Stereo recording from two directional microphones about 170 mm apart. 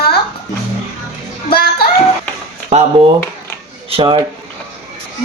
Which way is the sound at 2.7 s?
40° right (ahead or behind).